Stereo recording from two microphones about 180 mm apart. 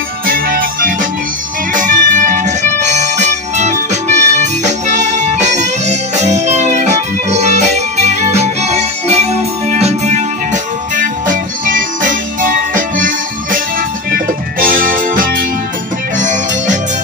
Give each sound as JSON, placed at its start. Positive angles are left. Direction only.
{"t": 0.3, "sound": "music", "side_deg": -50}